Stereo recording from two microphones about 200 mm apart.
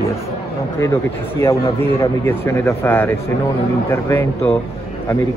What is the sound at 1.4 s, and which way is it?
Speech, 15° left (ahead or behind).